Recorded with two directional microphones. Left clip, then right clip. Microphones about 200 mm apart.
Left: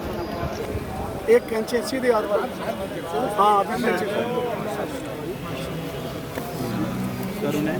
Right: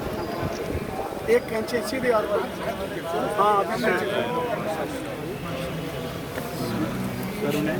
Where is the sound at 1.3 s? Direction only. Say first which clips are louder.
Left 4 dB; 65° left (ahead or behind).